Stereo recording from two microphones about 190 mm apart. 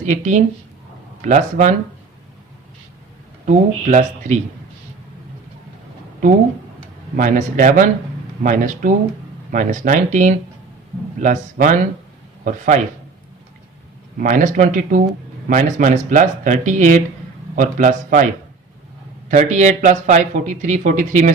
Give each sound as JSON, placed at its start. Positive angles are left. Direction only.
{"t": 0.0, "sound": "speech", "side_deg": -40}
{"t": 3.4, "sound": "speech", "side_deg": -40}
{"t": 7.2, "sound": "speech", "side_deg": -40}
{"t": 14.2, "sound": "speech", "side_deg": -45}
{"t": 19.3, "sound": "speech", "side_deg": -40}